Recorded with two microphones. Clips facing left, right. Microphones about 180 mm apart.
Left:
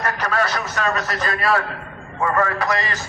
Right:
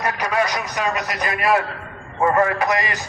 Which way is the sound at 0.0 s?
15° right (ahead or behind).